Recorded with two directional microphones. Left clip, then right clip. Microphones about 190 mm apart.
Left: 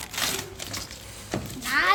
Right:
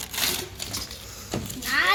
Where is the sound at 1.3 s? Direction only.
15° right (ahead or behind).